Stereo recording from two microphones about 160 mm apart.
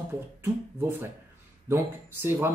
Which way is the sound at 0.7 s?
15° right (ahead or behind).